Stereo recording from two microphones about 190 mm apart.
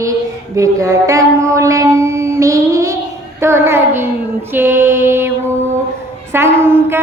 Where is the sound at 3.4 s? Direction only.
15° right (ahead or behind).